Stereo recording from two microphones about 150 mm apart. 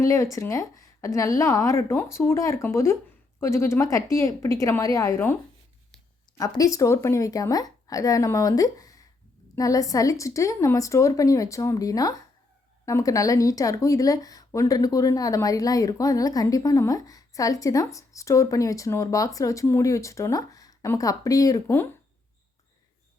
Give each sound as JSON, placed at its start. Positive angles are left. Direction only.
{"t": 0.0, "sound": "speech", "side_deg": 20}